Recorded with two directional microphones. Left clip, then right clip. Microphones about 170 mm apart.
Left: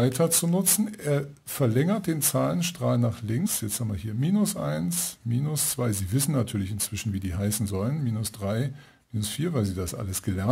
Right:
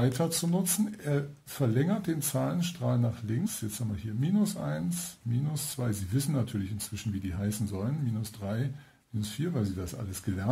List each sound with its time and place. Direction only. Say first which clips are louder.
0.0 s speech: left 6 dB; 45° left (ahead or behind)
9.2 s speech: left 5 dB; 55° left (ahead or behind)